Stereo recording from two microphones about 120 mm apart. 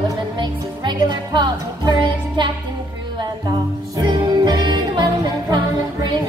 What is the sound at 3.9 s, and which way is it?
Music, 40° right (ahead or behind).